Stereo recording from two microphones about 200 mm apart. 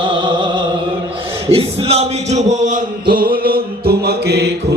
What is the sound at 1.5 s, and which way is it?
Music, 30° right (ahead or behind).